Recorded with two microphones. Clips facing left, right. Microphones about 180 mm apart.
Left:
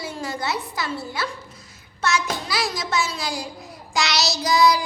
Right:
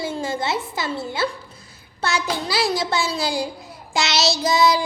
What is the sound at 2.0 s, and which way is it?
A woman's voice, 30° right (ahead or behind).